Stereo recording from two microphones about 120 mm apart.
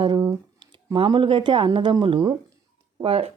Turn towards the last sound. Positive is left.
turn(degrees=-55)  # may be behind; listen again after turning